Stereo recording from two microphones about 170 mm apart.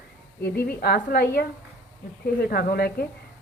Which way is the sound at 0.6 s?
65° left (ahead or behind).